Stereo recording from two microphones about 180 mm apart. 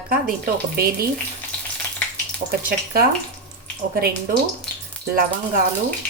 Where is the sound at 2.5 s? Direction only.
55° right (ahead or behind).